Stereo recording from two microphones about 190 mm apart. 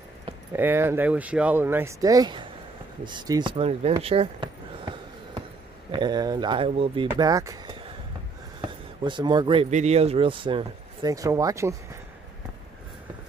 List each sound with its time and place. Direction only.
0.5 s speech: 10° right (ahead or behind)
8.5 s a sound: 25° right (ahead or behind)
9.7 s speech: 35° right (ahead or behind); by 12.0 s 15° right (ahead or behind)